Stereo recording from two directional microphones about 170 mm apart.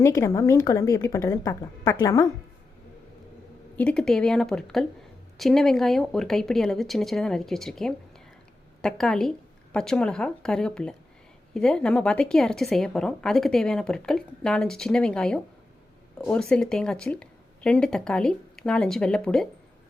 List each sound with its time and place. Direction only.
0.0 s a woman's voice: 20° left (ahead or behind)
3.8 s a woman's voice: 5° left (ahead or behind)